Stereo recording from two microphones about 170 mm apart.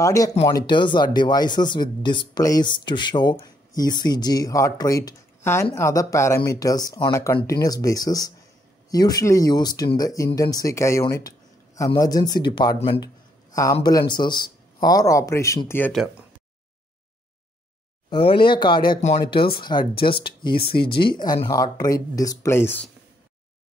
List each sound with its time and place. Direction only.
0.0 s speech: 20° left (ahead or behind); by 13.0 s 35° left (ahead or behind)
13.0 s a sound: 20° left (ahead or behind)
13.8 s speech: 25° left (ahead or behind)
18.1 s speech: 30° left (ahead or behind)
18.9 s speech: 40° left (ahead or behind)
19.3 s speech: 30° left (ahead or behind); by 22.8 s 15° left (ahead or behind)